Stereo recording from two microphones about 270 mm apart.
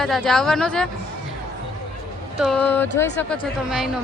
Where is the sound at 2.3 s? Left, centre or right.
Centre.